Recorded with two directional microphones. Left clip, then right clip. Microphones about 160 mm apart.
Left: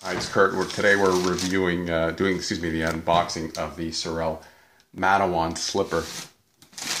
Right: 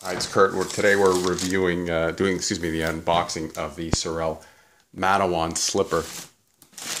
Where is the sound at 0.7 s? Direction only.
80° right.